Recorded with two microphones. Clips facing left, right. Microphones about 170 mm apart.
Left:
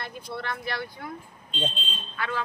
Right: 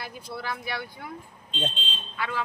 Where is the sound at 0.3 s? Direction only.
5° right (ahead or behind).